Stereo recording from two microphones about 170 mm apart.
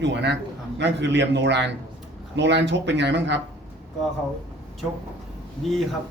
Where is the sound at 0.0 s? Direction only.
90° right.